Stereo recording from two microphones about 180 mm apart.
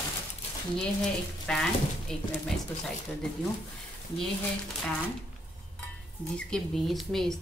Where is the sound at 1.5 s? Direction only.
5° left (ahead or behind).